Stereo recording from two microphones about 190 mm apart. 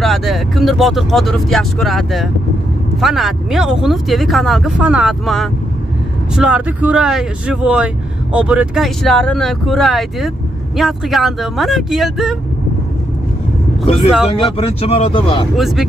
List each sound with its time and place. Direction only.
0.0 s speech: centre (ahead or behind)
14.3 s speech: 30° left (ahead or behind)
15.5 s speech: centre (ahead or behind)